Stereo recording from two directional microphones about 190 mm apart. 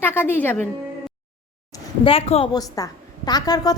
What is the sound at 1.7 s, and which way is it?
Speech, 30° left (ahead or behind).